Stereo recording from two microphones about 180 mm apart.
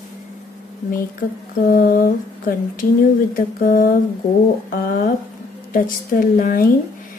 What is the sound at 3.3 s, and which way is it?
Speech, 50° left (ahead or behind).